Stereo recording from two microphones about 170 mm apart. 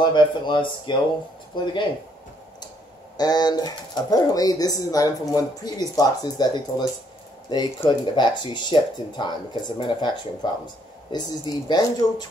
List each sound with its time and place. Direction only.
0.0 s speech: 25° left (ahead or behind)
3.2 s speech: 25° left (ahead or behind)